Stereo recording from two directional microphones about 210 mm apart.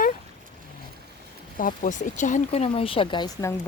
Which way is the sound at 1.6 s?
40° left (ahead or behind).